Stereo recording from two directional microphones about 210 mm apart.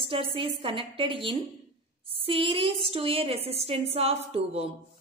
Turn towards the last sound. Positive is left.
turn(degrees=-30)  # may be behind; listen again after turning